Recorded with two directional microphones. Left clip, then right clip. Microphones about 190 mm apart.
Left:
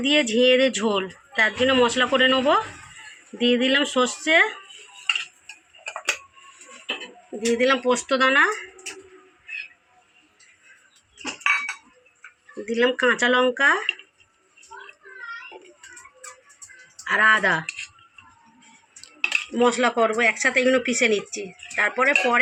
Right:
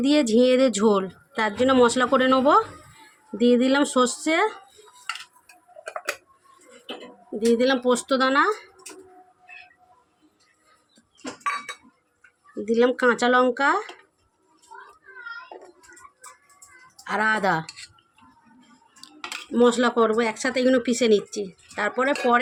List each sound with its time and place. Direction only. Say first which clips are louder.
0.0 s speech: even; 70° right (ahead or behind)
7.3 s speech: even; 60° right (ahead or behind)
12.6 s speech: even; 60° right (ahead or behind)
17.1 s speech: left 4 dB; 60° right (ahead or behind)
19.5 s speech: right 2 dB; 65° right (ahead or behind)